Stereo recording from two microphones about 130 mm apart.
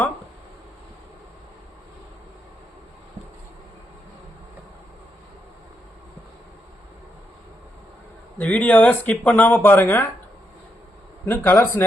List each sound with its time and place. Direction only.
8.4 s speech: 10° left (ahead or behind)
11.3 s speech: 15° left (ahead or behind)